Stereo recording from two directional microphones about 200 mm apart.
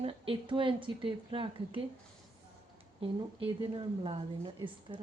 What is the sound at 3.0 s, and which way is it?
Speech, 25° right (ahead or behind).